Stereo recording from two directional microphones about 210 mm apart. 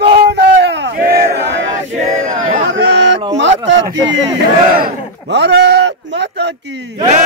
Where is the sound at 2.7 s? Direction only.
55° right (ahead or behind).